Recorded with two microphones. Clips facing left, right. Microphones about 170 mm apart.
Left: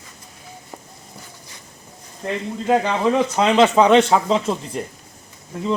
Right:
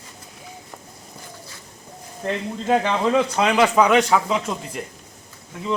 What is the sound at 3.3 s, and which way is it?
Speech, 25° left (ahead or behind).